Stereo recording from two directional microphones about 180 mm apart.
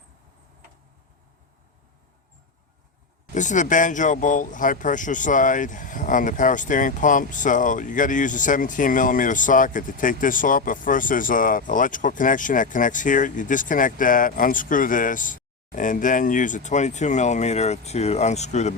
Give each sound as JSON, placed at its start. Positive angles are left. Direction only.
{"t": 3.3, "sound": "speech", "side_deg": 45}